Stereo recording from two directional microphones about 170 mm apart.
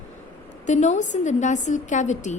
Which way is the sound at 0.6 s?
45° left (ahead or behind).